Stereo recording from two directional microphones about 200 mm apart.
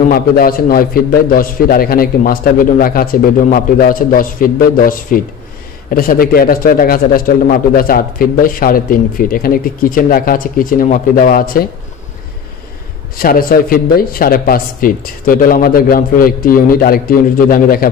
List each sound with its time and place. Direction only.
0.1 s a man's voice: 45° left (ahead or behind)
13.2 s a man's voice: 45° left (ahead or behind)